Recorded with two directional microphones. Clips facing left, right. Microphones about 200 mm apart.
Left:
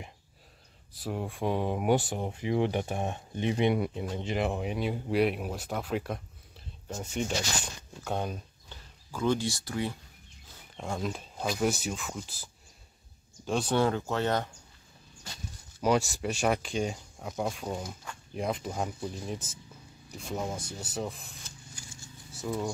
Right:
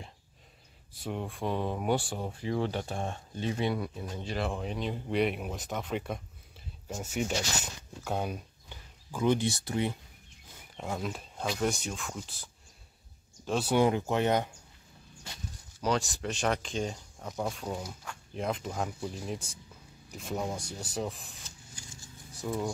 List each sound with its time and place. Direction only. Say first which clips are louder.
0.9 s speech: left 1 dB; centre (ahead or behind)
1.4 s speech: left 3 dB; 15° left (ahead or behind); by 9.9 s 20° right (ahead or behind)
10.5 s speech: even; 5° right (ahead or behind)
13.5 s speech: even; 5° right (ahead or behind)
13.7 s speech: right 3 dB; 15° right (ahead or behind)
16.1 s speech: left 2 dB; 10° left (ahead or behind)